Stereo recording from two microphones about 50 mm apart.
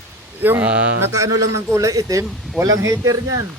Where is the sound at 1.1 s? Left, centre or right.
Right.